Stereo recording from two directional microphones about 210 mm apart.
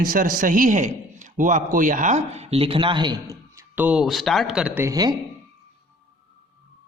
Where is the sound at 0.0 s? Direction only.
40° right (ahead or behind); by 5.1 s 15° right (ahead or behind).